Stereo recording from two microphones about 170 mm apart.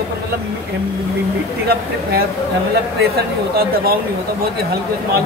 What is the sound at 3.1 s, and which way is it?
Speech, 65° right (ahead or behind).